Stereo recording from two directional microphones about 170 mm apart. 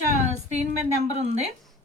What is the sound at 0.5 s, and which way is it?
Speech, 40° right (ahead or behind).